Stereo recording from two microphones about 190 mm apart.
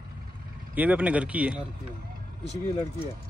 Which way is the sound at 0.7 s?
10° right (ahead or behind).